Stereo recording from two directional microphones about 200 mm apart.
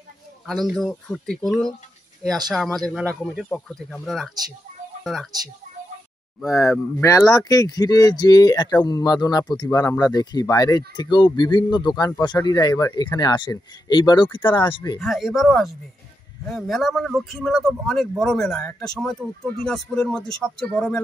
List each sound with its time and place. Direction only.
0.5 s a man's voice: centre (ahead or behind)
6.5 s speech: 15° left (ahead or behind)
15.0 s a man's voice: centre (ahead or behind)